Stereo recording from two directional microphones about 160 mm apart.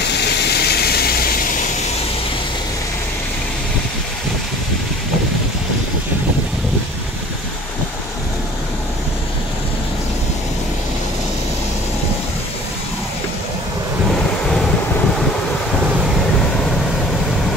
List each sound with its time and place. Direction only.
0.2 s a sound: 90° left
14.4 s waves: 5° left (ahead or behind)
15.7 s wind: 5° right (ahead or behind)